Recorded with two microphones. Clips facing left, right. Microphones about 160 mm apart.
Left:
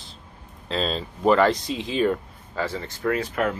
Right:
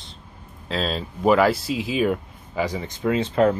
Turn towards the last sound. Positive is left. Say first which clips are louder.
# right 5 dB
turn(degrees=-25)  # may be behind; listen again after turning